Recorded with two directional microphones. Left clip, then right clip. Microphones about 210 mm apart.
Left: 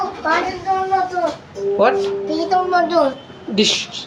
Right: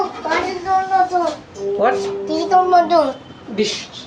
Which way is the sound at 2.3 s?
Centre (ahead or behind).